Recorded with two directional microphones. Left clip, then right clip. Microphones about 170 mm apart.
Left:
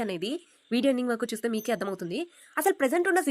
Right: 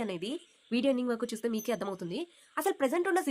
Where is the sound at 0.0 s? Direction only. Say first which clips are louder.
Left 5 dB; 20° left (ahead or behind).